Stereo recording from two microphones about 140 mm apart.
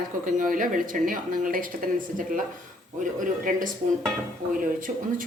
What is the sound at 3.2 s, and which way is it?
Speech, 70° right (ahead or behind).